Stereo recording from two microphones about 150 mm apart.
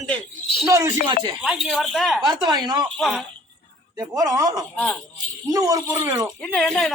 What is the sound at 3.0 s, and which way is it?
Speech, centre (ahead or behind).